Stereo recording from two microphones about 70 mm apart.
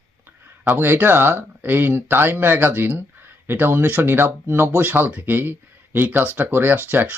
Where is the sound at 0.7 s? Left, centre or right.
Right.